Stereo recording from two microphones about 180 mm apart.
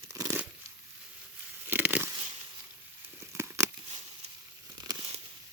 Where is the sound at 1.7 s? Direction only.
10° right (ahead or behind).